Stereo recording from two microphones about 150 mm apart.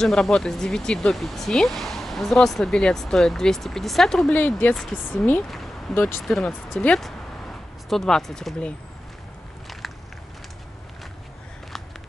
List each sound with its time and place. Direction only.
0.0 s speech: 5° left (ahead or behind)
5.5 s a sound: centre (ahead or behind)
5.9 s speech: 15° left (ahead or behind)
6.2 s speech: centre (ahead or behind)